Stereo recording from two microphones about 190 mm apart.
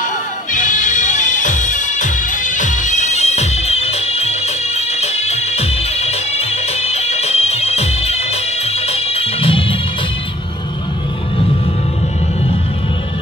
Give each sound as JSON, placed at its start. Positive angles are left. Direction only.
{"t": 0.5, "sound": "music", "side_deg": 40}